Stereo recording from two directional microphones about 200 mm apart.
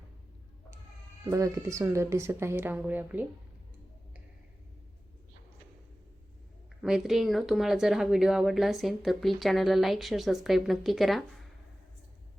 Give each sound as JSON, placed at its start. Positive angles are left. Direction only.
{"t": 1.2, "sound": "speech", "side_deg": -15}
{"t": 6.8, "sound": "speech", "side_deg": 0}